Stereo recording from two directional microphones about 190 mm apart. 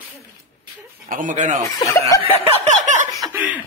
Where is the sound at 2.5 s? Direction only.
40° right (ahead or behind).